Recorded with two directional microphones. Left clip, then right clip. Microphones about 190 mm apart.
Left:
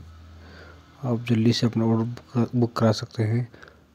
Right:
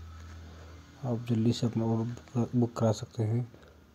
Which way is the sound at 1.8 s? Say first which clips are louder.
Left 8 dB; 30° left (ahead or behind).